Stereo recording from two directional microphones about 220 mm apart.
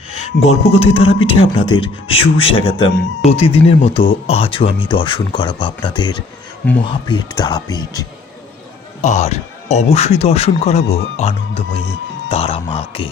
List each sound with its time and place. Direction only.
0.1 s speech: 30° left (ahead or behind)
9.0 s speech: 30° left (ahead or behind)